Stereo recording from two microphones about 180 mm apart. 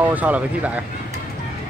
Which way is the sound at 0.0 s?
10° right (ahead or behind).